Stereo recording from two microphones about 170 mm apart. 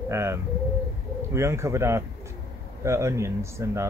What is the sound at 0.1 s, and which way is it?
Speech, 15° right (ahead or behind).